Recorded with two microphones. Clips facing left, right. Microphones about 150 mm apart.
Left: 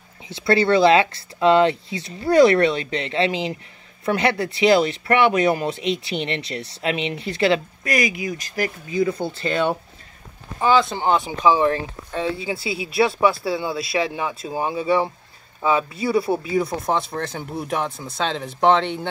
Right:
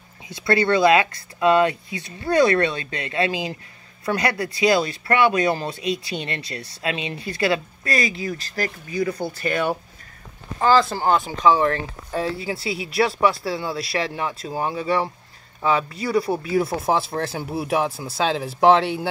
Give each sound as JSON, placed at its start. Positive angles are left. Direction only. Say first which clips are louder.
{"t": 0.3, "sound": "speech", "louder": "left 2 dB", "side_deg": 25}
{"t": 10.6, "sound": "speech", "louder": "even", "side_deg": 0}
{"t": 11.2, "sound": "speech", "louder": "even", "side_deg": 15}
{"t": 16.5, "sound": "speech", "louder": "right 4 dB", "side_deg": -5}